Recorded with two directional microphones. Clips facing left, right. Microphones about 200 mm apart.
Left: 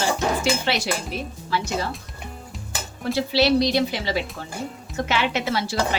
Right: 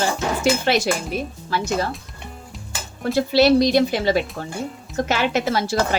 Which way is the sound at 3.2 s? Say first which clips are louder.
Right 4 dB; 50° right (ahead or behind).